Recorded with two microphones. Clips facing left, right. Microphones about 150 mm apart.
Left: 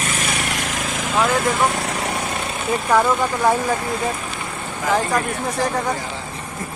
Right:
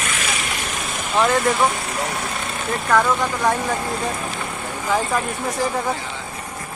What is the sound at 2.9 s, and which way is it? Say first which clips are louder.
Speech: left 1 dB; 10° left (ahead or behind).